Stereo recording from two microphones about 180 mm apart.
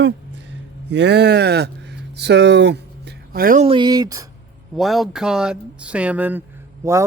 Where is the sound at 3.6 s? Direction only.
25° right (ahead or behind).